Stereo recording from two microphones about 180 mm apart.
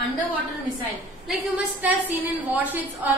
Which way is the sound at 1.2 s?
10° right (ahead or behind).